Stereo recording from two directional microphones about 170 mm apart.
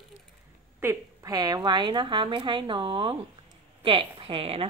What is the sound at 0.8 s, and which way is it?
A woman's voice, 20° right (ahead or behind).